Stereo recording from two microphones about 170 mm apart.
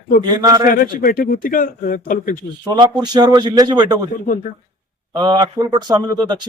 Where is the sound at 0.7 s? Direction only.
60° left (ahead or behind).